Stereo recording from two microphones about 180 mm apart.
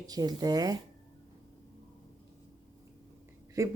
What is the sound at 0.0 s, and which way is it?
Speech, 20° right (ahead or behind).